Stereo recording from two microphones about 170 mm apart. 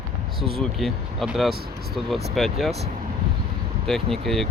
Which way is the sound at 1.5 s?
65° right (ahead or behind).